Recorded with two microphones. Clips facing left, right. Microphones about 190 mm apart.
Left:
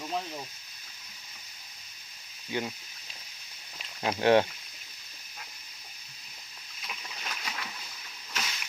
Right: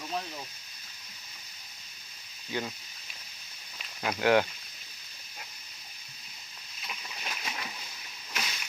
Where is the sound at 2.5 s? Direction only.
15° left (ahead or behind).